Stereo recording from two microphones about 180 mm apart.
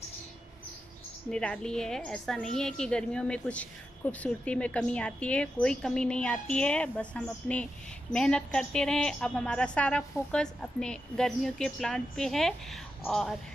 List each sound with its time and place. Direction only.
1.3 s a woman's voice: 5° left (ahead or behind)